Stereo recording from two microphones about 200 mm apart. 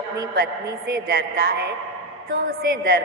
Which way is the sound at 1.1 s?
50° right (ahead or behind).